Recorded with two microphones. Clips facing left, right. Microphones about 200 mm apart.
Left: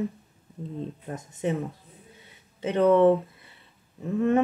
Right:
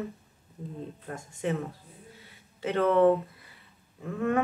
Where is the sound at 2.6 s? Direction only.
20° left (ahead or behind).